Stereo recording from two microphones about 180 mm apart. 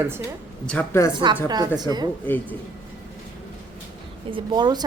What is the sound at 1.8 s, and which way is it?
Speech, 20° right (ahead or behind).